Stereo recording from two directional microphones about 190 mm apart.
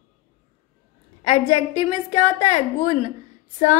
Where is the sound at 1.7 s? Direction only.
40° left (ahead or behind).